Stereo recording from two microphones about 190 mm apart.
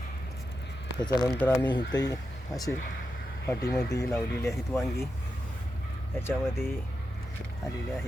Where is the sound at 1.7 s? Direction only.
20° left (ahead or behind).